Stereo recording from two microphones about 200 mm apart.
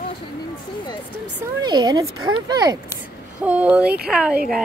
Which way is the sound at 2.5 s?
20° right (ahead or behind).